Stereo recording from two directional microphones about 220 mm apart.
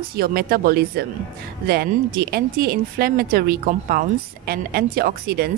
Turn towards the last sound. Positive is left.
turn(degrees=-45)  # may be behind; listen again after turning